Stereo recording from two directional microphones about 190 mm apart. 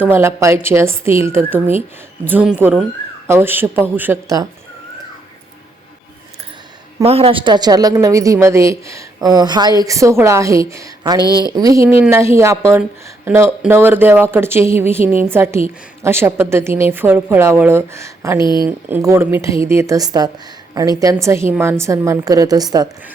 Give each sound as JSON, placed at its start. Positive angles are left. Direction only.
{"t": 0.0, "sound": "a woman's voice", "side_deg": -15}
{"t": 7.0, "sound": "a woman's voice", "side_deg": -30}
{"t": 18.3, "sound": "speech", "side_deg": 25}
{"t": 18.6, "sound": "a woman's voice", "side_deg": -15}